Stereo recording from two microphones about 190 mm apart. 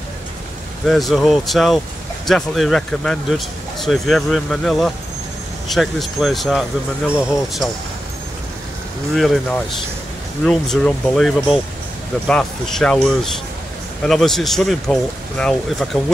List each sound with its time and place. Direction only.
0.8 s speech: centre (ahead or behind)
9.1 s speech: centre (ahead or behind)